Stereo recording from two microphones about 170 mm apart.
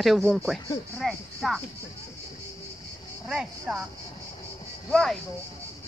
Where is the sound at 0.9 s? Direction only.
Centre (ahead or behind).